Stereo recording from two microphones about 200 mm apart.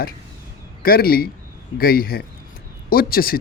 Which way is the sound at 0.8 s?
50° left (ahead or behind).